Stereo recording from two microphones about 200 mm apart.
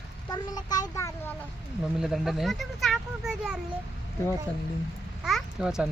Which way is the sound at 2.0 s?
Centre (ahead or behind).